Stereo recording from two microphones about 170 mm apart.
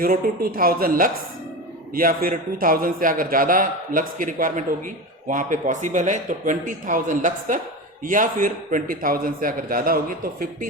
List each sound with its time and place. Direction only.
0.0 s a man's voice: 60° right (ahead or behind)